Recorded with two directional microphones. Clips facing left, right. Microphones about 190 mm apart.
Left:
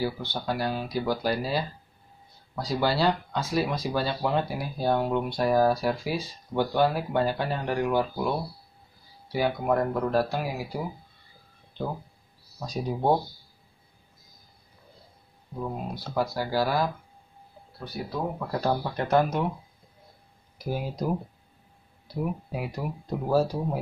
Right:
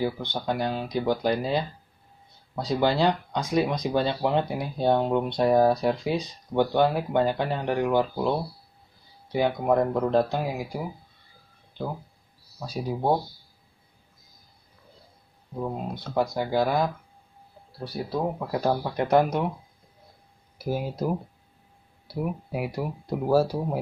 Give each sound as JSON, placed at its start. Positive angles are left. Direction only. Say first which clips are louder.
{"t": 0.0, "sound": "speech", "louder": "right 2 dB", "side_deg": -20}
{"t": 2.7, "sound": "speech", "louder": "right 2 dB", "side_deg": -20}
{"t": 12.5, "sound": "speech", "louder": "even", "side_deg": -5}
{"t": 15.6, "sound": "speech", "louder": "right 2 dB", "side_deg": -20}
{"t": 17.7, "sound": "speech", "louder": "right 4 dB", "side_deg": -35}
{"t": 18.5, "sound": "speech", "louder": "even", "side_deg": -15}
{"t": 20.5, "sound": "speech", "louder": "right 2 dB", "side_deg": -5}